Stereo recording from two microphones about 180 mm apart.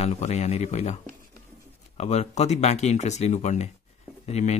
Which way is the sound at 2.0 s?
40° left (ahead or behind).